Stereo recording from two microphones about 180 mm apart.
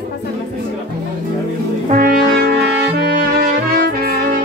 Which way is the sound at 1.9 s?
55° right (ahead or behind).